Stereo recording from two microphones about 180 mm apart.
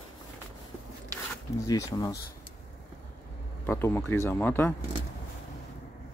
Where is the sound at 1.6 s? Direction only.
20° left (ahead or behind).